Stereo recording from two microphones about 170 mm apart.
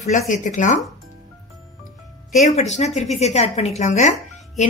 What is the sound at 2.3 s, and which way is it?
Speech, 45° left (ahead or behind).